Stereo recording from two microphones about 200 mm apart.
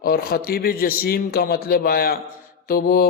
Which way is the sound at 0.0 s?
50° left (ahead or behind).